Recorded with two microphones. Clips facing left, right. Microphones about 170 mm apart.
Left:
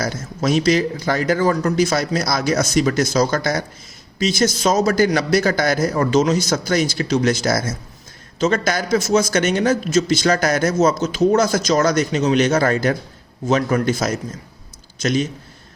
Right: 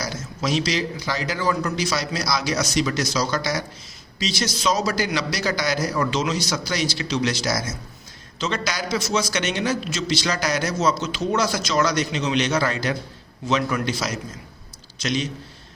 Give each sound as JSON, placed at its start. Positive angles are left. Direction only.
{"t": 0.0, "sound": "a man's voice", "side_deg": 50}